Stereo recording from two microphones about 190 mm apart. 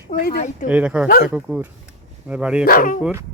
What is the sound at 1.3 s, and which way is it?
Speech, 10° right (ahead or behind).